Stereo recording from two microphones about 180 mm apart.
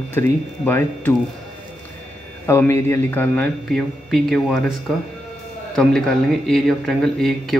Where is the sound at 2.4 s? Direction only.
15° left (ahead or behind); by 4.7 s centre (ahead or behind).